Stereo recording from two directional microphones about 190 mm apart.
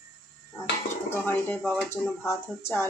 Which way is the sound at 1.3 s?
10° left (ahead or behind).